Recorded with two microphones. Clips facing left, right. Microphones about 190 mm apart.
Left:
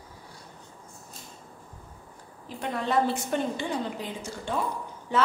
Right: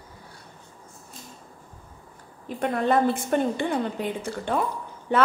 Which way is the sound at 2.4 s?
55° right (ahead or behind).